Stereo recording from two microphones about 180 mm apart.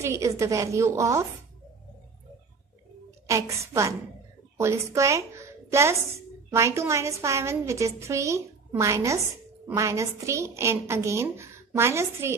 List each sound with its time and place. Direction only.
0.0 s a woman's voice: 15° right (ahead or behind)
3.3 s a woman's voice: 15° right (ahead or behind)